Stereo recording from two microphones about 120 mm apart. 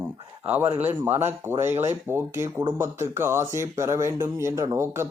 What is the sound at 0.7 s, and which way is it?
Speech, 20° right (ahead or behind).